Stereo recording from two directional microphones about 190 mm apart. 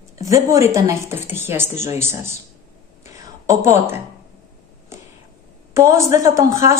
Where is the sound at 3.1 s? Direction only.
15° right (ahead or behind).